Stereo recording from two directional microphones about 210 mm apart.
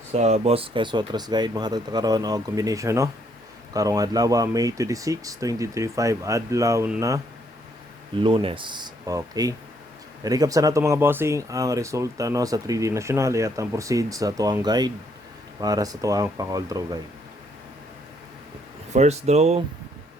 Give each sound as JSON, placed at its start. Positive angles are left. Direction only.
{"t": 0.1, "sound": "speech", "side_deg": -30}
{"t": 8.1, "sound": "speech", "side_deg": -25}
{"t": 18.9, "sound": "speech", "side_deg": -30}